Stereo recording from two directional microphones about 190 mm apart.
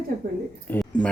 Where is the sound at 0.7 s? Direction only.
10° left (ahead or behind).